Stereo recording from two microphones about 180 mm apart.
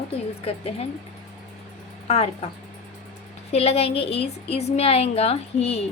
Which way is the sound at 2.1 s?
35° left (ahead or behind).